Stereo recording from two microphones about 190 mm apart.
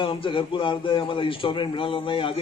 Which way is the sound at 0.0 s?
25° left (ahead or behind).